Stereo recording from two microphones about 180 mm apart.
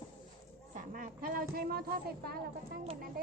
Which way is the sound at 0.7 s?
50° right (ahead or behind).